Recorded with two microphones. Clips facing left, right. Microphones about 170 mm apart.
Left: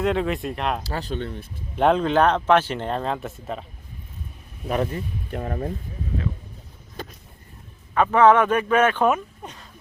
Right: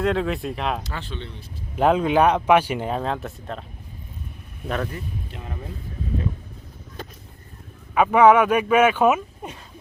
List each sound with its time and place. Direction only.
0.0 s speech: centre (ahead or behind)
0.8 s speech: 35° left (ahead or behind)
1.7 s speech: 5° right (ahead or behind)
4.7 s speech: 25° left (ahead or behind)
5.3 s speech: 55° left (ahead or behind)
7.9 s speech: 10° right (ahead or behind)